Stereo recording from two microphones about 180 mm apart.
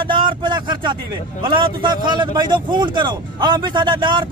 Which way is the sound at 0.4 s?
25° right (ahead or behind).